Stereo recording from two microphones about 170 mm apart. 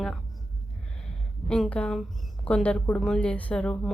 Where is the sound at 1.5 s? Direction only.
5° left (ahead or behind).